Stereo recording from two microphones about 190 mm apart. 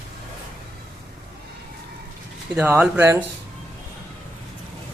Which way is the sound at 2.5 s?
10° right (ahead or behind).